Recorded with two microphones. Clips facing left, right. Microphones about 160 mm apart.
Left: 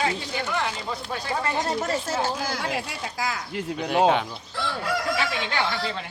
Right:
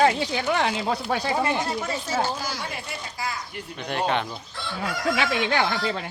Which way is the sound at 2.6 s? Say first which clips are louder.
Left 4 dB; 90° left.